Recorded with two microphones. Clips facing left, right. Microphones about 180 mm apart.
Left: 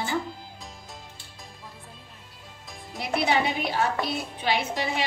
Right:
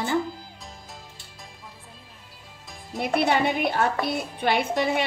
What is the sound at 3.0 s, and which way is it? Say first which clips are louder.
A woman's voice: right 3 dB; 55° right (ahead or behind).